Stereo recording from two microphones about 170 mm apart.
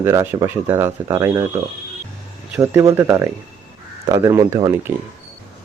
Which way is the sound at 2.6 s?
15° right (ahead or behind).